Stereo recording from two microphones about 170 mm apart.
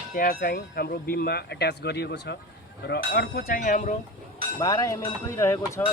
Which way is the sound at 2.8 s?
70° left (ahead or behind).